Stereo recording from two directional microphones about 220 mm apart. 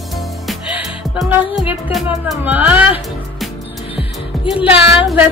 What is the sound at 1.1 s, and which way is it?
Music, centre (ahead or behind).